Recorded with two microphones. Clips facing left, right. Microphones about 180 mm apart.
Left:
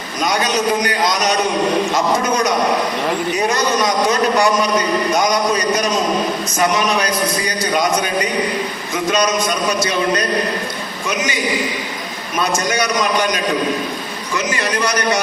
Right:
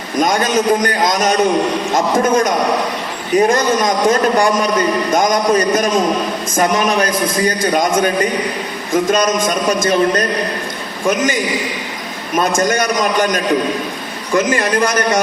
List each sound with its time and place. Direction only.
0.2 s a man's voice: 50° right (ahead or behind)
12.4 s a man's voice: 50° right (ahead or behind)